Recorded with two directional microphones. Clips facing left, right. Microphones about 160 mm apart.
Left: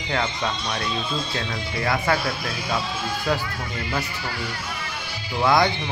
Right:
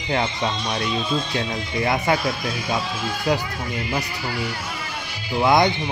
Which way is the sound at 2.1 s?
20° right (ahead or behind).